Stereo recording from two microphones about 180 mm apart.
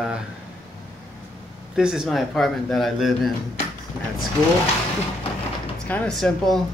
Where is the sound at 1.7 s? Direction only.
5° right (ahead or behind).